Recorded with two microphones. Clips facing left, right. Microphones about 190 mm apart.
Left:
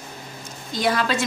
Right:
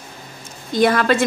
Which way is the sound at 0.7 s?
55° right (ahead or behind).